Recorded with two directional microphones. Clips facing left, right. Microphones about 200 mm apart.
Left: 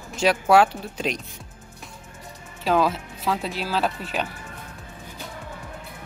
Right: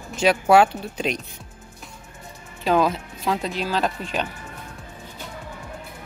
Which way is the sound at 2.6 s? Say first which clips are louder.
Right 1 dB; centre (ahead or behind).